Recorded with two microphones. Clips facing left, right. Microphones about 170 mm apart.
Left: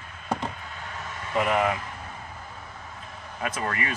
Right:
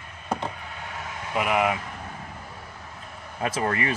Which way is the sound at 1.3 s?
5° right (ahead or behind).